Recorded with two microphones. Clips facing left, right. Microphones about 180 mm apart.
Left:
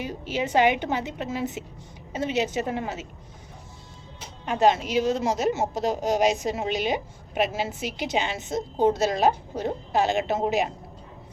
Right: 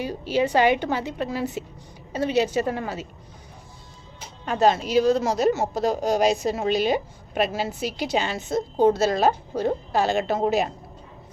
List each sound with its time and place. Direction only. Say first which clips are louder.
0.0 s a woman's voice: right 5 dB; 20° left (ahead or behind)
4.4 s a woman's voice: right 1 dB; 15° left (ahead or behind)
4.9 s speech: right 5 dB; 35° right (ahead or behind)
5.5 s a woman's voice: right 3 dB; 15° left (ahead or behind)